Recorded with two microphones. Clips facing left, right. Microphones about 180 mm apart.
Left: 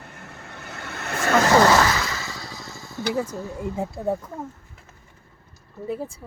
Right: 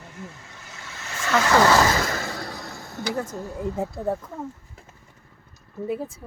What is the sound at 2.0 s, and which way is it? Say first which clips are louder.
Slam: right 3 dB; 50° right (ahead or behind).